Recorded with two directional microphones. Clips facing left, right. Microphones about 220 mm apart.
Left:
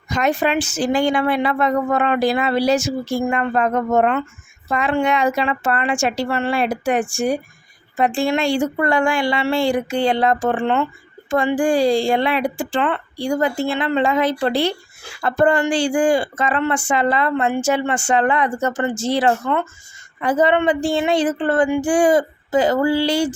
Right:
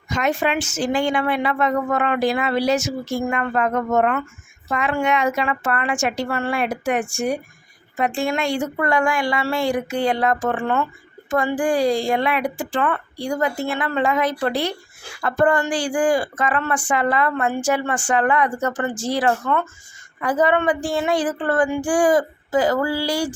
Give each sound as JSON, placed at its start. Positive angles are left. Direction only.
{"t": 0.1, "sound": "speech", "side_deg": 35}